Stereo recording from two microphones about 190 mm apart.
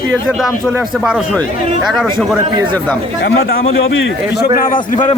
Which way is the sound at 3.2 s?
75° left (ahead or behind).